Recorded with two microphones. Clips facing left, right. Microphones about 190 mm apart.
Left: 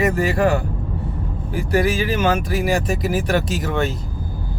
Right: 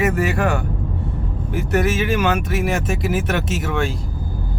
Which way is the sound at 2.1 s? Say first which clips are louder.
Even; 30° left (ahead or behind).